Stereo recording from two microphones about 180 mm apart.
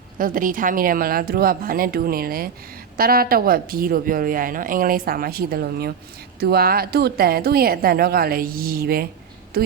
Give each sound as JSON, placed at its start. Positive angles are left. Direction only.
{"t": 0.2, "sound": "a woman's voice", "side_deg": -50}